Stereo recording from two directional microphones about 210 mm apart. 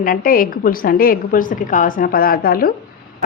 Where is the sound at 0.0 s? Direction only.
40° left (ahead or behind).